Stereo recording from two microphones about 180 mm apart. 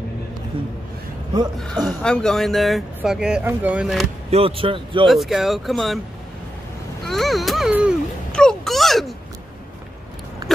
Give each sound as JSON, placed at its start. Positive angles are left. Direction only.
{"t": 1.9, "sound": "speech", "side_deg": 5}
{"t": 4.3, "sound": "speech", "side_deg": -30}
{"t": 5.0, "sound": "speech", "side_deg": 0}
{"t": 7.1, "sound": "speech", "side_deg": 0}
{"t": 8.3, "sound": "a sound", "side_deg": 5}